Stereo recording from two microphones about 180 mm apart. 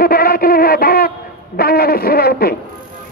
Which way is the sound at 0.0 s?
55° left (ahead or behind).